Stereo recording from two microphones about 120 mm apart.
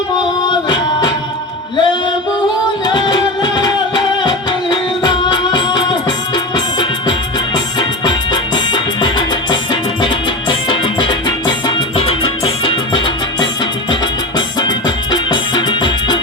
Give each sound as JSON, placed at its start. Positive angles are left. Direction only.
{"t": 0.4, "sound": "music", "side_deg": 35}
{"t": 10.7, "sound": "music", "side_deg": 40}
{"t": 11.9, "sound": "music", "side_deg": 50}
{"t": 14.3, "sound": "music", "side_deg": 35}